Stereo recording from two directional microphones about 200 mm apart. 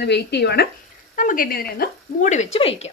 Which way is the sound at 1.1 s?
40° left (ahead or behind).